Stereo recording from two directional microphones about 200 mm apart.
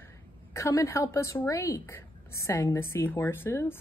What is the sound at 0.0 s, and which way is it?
A woman's voice, 15° left (ahead or behind).